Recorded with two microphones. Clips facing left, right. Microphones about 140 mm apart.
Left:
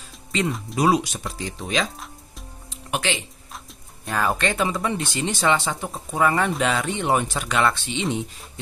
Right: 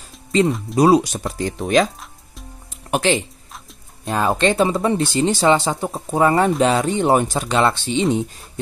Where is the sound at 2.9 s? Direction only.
40° right (ahead or behind).